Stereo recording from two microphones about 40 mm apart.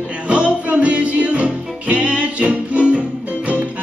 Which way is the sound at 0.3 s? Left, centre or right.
Right.